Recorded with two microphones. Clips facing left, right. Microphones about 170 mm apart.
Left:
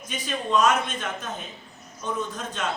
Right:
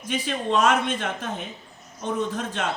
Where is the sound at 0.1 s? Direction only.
65° right (ahead or behind).